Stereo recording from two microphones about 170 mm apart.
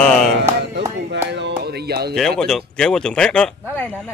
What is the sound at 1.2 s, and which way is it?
Music, 90° right.